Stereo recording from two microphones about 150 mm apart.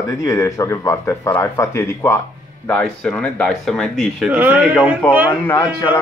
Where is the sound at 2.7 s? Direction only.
5° left (ahead or behind).